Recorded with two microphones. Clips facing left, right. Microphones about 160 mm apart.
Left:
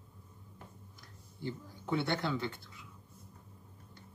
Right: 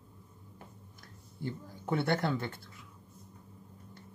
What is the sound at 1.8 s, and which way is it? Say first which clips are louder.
Speech: right 3 dB; 50° right (ahead or behind).